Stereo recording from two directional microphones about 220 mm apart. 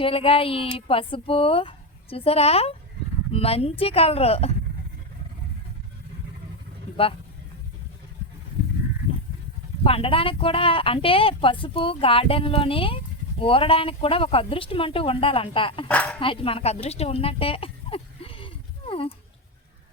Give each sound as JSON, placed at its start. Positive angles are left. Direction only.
{"t": 0.0, "sound": "speech", "side_deg": 25}
{"t": 9.8, "sound": "speech", "side_deg": 25}
{"t": 15.9, "sound": "speech", "side_deg": 5}
{"t": 16.2, "sound": "speech", "side_deg": 25}